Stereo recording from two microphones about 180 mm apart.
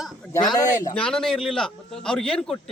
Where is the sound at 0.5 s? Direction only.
20° left (ahead or behind).